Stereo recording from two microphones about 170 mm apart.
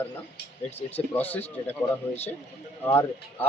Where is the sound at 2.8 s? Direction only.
10° left (ahead or behind).